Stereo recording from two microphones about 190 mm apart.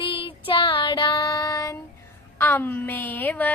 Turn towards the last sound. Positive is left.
turn(degrees=10)  # may be behind; listen again after turning